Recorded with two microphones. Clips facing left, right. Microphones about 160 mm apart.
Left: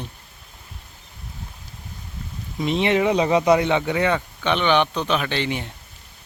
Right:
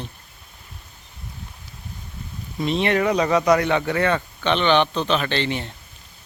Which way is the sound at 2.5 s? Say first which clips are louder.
Left 1 dB; 15° left (ahead or behind).